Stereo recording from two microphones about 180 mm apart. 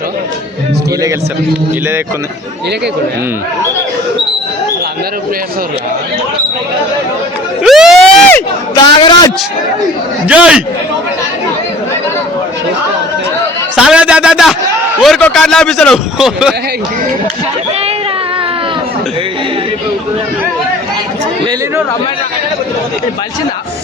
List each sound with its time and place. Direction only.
7.6 s a sound: 5° right (ahead or behind)
9.0 s a man's voice: 25° left (ahead or behind)
10.2 s a man's voice: 5° right (ahead or behind)
13.7 s a man's voice: 5° right (ahead or behind)